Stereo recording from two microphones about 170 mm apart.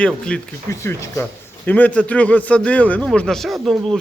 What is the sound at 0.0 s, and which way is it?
Speech, 5° left (ahead or behind).